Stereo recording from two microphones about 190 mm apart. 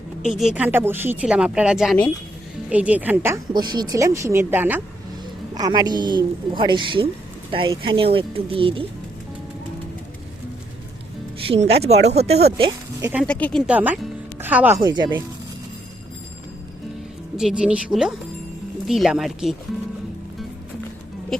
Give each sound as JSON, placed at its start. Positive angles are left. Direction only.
{"t": 0.3, "sound": "speech", "side_deg": 0}
{"t": 3.5, "sound": "speech", "side_deg": -20}
{"t": 5.5, "sound": "a woman's voice", "side_deg": -20}
{"t": 11.4, "sound": "speech", "side_deg": -30}
{"t": 13.0, "sound": "speech", "side_deg": -10}
{"t": 13.2, "sound": "speech", "side_deg": 5}
{"t": 13.7, "sound": "speech", "side_deg": -5}
{"t": 14.8, "sound": "a woman's voice", "side_deg": -20}
{"t": 17.3, "sound": "speech", "side_deg": -5}